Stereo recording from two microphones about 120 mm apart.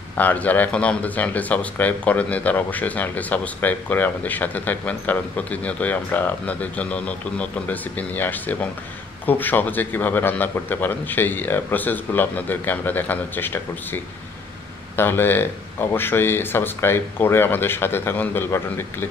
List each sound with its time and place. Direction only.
0.2 s speech: 15° left (ahead or behind)